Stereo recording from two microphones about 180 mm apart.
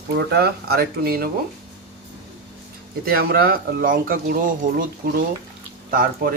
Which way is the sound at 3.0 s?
55° right (ahead or behind).